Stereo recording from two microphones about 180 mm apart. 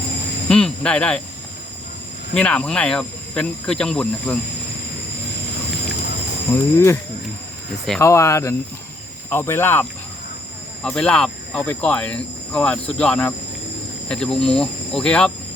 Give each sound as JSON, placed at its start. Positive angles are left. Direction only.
{"t": 0.4, "sound": "speech", "side_deg": 5}
{"t": 2.3, "sound": "cricket", "side_deg": 5}
{"t": 6.5, "sound": "speech", "side_deg": 10}
{"t": 10.8, "sound": "cricket", "side_deg": 5}